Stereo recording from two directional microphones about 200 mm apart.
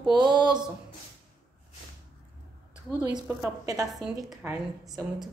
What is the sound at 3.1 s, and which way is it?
Speech, 20° right (ahead or behind).